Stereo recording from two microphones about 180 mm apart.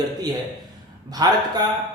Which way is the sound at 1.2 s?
20° right (ahead or behind).